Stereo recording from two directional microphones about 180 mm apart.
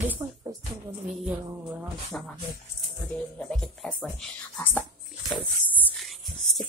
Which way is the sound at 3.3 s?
5° left (ahead or behind).